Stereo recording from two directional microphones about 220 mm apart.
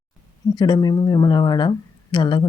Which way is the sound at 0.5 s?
20° left (ahead or behind).